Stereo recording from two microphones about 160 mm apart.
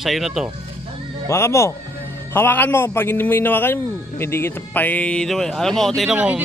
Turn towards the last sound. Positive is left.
turn(degrees=-5)  # may be behind; listen again after turning